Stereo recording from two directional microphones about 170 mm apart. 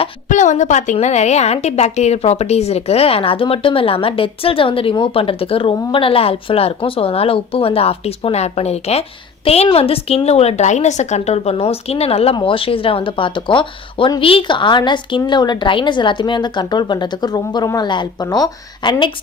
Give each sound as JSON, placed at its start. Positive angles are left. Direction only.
{"t": 0.3, "sound": "a woman's voice", "side_deg": 45}